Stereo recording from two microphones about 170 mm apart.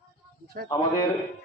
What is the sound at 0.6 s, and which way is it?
Speech, 55° right (ahead or behind).